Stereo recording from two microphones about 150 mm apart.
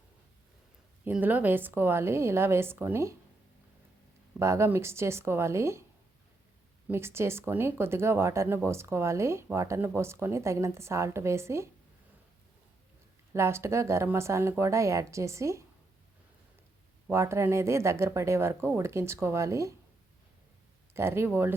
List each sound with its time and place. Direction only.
1.0 s speech: 10° right (ahead or behind)
4.4 s speech: 20° right (ahead or behind)
6.8 s speech: 15° right (ahead or behind)
13.3 s speech: 15° right (ahead or behind)
17.1 s speech: 15° right (ahead or behind)
20.9 s speech: 15° right (ahead or behind)